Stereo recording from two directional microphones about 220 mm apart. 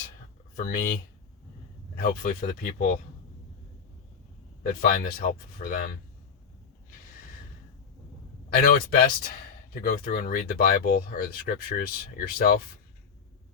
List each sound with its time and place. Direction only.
0.5 s speech: 40° left (ahead or behind)
2.0 s speech: 40° left (ahead or behind)
4.6 s speech: 40° left (ahead or behind)
8.4 s speech: 40° left (ahead or behind)